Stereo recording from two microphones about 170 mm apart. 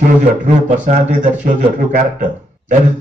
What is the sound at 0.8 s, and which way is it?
A man's voice, 45° right (ahead or behind).